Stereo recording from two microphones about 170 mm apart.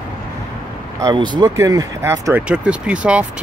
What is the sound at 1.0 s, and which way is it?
Speech, 25° right (ahead or behind).